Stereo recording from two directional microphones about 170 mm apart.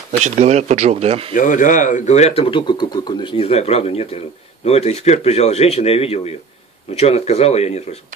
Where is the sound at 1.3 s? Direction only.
50° left (ahead or behind).